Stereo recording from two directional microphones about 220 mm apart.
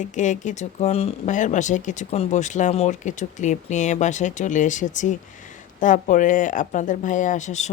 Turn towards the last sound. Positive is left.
turn(degrees=35)  # may be behind; listen again after turning